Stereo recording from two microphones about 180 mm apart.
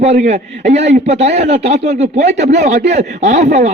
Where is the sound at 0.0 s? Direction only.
40° right (ahead or behind).